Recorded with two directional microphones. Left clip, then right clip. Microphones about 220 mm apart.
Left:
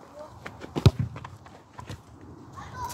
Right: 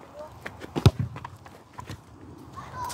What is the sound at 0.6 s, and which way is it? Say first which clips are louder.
Walk: right 1 dB; 10° right (ahead or behind).